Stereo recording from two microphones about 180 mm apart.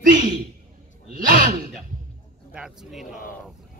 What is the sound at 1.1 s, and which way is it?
Sigh, 50° right (ahead or behind).